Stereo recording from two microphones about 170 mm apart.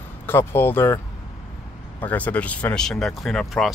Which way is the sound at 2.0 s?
10° left (ahead or behind).